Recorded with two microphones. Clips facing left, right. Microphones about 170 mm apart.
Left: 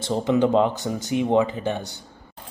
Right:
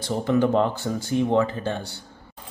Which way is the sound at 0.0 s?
20° left (ahead or behind).